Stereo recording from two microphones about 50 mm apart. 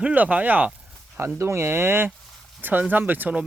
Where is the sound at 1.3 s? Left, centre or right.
Right.